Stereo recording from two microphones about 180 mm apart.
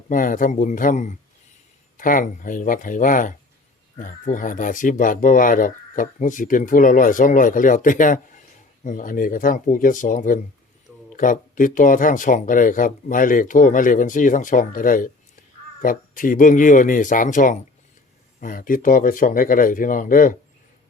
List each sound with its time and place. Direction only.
0.1 s speech: 50° left (ahead or behind)